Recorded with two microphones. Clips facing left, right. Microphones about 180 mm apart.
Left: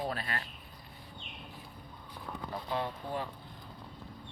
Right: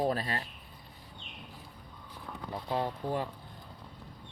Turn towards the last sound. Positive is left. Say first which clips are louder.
# right 3 dB
turn(degrees=-40)  # may be behind; listen again after turning